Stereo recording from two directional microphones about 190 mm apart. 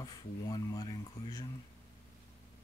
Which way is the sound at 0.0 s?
20° left (ahead or behind).